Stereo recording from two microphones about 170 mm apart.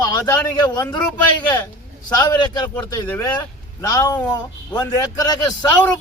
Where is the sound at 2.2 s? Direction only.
25° left (ahead or behind).